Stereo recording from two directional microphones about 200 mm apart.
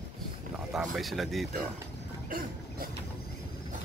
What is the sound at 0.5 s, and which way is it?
Speech, centre (ahead or behind).